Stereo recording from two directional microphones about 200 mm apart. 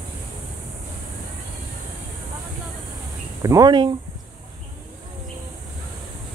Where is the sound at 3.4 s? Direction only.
15° right (ahead or behind).